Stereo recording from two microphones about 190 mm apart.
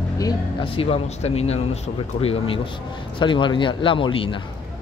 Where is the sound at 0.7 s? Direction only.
30° left (ahead or behind).